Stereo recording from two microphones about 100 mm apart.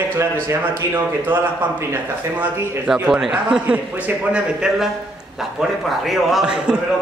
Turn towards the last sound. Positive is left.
turn(degrees=-10)  # may be behind; listen again after turning